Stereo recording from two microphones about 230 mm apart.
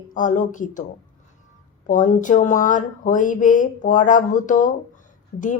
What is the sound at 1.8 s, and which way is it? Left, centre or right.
Speech, left.